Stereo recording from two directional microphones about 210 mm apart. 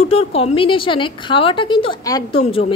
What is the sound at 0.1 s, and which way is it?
A woman's voice, 30° left (ahead or behind).